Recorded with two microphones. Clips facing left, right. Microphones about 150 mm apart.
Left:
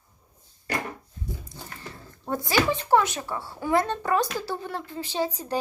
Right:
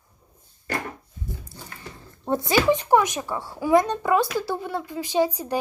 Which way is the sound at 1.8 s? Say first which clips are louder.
Right 3 dB; 20° right (ahead or behind).